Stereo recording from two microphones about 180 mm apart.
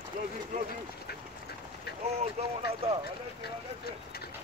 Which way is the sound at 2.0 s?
35° right (ahead or behind).